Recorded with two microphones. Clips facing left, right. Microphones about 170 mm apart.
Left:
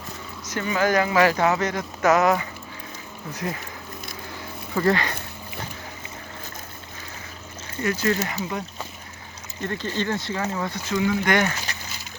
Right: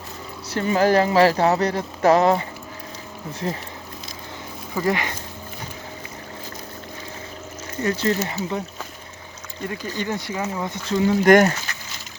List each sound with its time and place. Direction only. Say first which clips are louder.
0.4 s speech: right 4 dB; 35° right (ahead or behind)
4.7 s speech: left 1 dB; 15° right (ahead or behind)
7.8 s speech: right 2 dB; 30° right (ahead or behind)
9.6 s speech: left 1 dB; 10° right (ahead or behind)
10.9 s speech: right 7 dB; 40° right (ahead or behind)